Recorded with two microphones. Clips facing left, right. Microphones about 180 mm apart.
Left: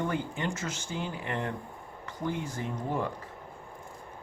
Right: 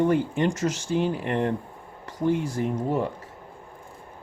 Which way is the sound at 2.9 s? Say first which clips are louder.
Right 3 dB; 25° right (ahead or behind).